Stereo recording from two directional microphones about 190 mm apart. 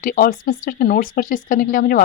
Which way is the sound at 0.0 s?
45° left (ahead or behind).